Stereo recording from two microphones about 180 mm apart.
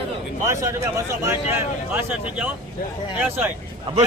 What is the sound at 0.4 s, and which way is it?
Speech, 15° right (ahead or behind).